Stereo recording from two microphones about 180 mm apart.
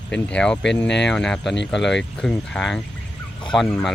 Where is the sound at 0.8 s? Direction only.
75° left (ahead or behind).